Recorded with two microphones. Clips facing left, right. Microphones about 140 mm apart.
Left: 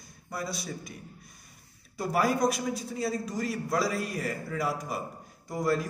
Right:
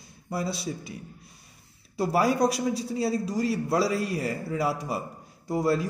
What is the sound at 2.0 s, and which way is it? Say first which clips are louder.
A man's voice: right 3 dB; 30° right (ahead or behind).